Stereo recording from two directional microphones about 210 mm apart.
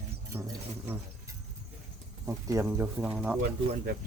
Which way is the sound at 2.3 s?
15° right (ahead or behind).